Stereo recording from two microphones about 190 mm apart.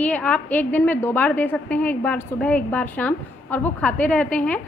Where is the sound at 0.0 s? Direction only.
5° left (ahead or behind).